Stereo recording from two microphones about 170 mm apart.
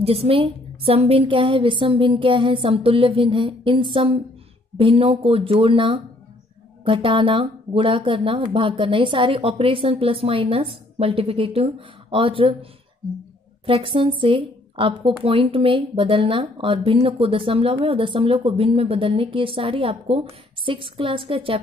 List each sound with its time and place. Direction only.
0.0 s a woman's voice: 35° right (ahead or behind)
13.7 s a woman's voice: 30° right (ahead or behind)